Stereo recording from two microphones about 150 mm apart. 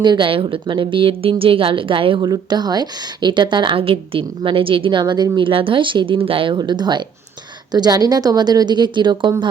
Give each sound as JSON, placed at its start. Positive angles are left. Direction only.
{"t": 0.0, "sound": "a woman's voice", "side_deg": -30}